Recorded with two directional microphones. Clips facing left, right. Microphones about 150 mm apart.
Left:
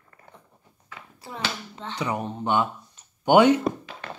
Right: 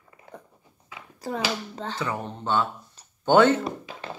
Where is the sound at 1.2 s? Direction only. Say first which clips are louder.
Right 9 dB; 40° right (ahead or behind).